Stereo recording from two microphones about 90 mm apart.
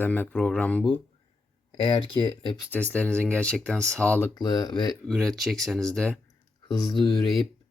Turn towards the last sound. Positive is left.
turn(degrees=50)  # may be behind; listen again after turning